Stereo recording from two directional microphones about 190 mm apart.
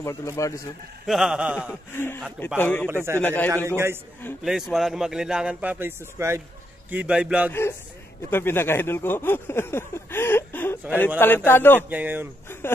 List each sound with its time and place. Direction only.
0.0 s speech: 15° left (ahead or behind)
1.0 s a man's voice: centre (ahead or behind)
2.0 s speech: 10° left (ahead or behind)
2.9 s a man's voice: 15° right (ahead or behind)
3.2 s speech: 10° left (ahead or behind)
3.4 s a man's voice: 15° right (ahead or behind)
4.5 s a man's voice: 5° right (ahead or behind)
8.3 s speech: 10° left (ahead or behind)
11.9 s a man's voice: 10° right (ahead or behind)